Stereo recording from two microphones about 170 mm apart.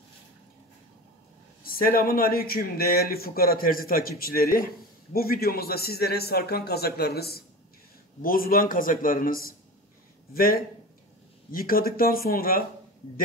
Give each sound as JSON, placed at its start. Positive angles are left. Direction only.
{"t": 1.6, "sound": "a man's voice", "side_deg": 60}
{"t": 8.2, "sound": "speech", "side_deg": 55}